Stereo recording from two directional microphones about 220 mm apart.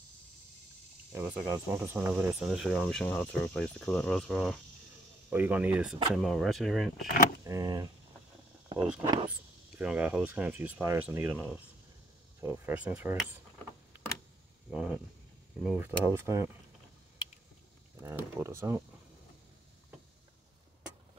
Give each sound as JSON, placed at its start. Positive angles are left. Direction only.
{"t": 1.1, "sound": "speech", "side_deg": -10}
{"t": 7.4, "sound": "speech", "side_deg": -15}
{"t": 8.7, "sound": "speech", "side_deg": -5}
{"t": 14.7, "sound": "speech", "side_deg": -5}
{"t": 18.0, "sound": "speech", "side_deg": -10}